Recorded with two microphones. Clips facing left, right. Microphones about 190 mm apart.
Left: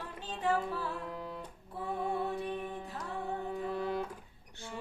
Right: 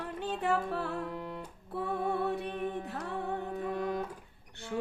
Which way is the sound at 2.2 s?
65° right (ahead or behind).